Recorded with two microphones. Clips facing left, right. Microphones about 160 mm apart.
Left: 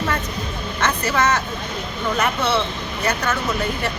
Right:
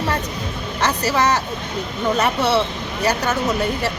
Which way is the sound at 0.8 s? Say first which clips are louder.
Right 1 dB; 35° right (ahead or behind).